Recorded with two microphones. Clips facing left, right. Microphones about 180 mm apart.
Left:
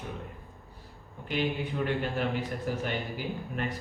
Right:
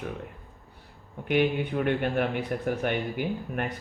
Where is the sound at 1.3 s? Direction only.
60° right (ahead or behind).